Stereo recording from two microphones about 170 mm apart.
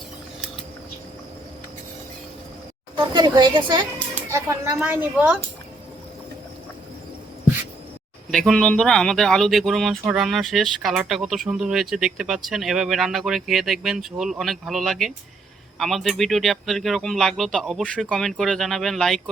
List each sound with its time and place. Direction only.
2.9 s a woman's voice: 25° right (ahead or behind)
4.3 s speech: 15° right (ahead or behind)
8.3 s speech: centre (ahead or behind)